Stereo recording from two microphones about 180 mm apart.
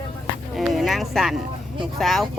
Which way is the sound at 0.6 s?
Centre (ahead or behind).